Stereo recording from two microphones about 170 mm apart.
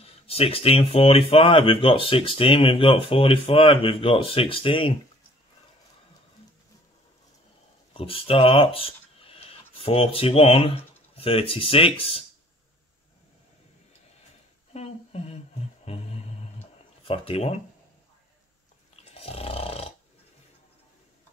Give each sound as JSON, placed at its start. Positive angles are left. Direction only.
{"t": 0.0, "sound": "speech", "side_deg": 35}
{"t": 7.9, "sound": "speech", "side_deg": 35}
{"t": 14.7, "sound": "a sound", "side_deg": 40}
{"t": 15.8, "sound": "music", "side_deg": 40}
{"t": 17.1, "sound": "speech", "side_deg": 35}
{"t": 19.1, "sound": "a sound", "side_deg": 35}